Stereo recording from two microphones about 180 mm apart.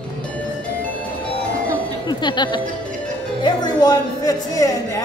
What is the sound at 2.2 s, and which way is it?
Speech, 25° left (ahead or behind).